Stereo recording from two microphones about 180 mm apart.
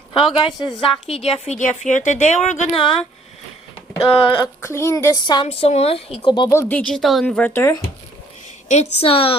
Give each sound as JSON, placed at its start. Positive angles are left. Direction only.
{"t": 0.1, "sound": "a woman's voice", "side_deg": 30}
{"t": 4.4, "sound": "a woman's voice", "side_deg": 15}
{"t": 6.5, "sound": "speech", "side_deg": 10}
{"t": 8.7, "sound": "a woman's voice", "side_deg": 35}